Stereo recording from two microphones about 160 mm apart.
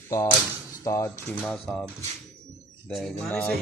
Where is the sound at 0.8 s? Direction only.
20° left (ahead or behind).